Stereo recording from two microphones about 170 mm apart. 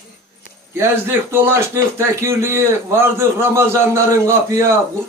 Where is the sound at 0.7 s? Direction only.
15° right (ahead or behind).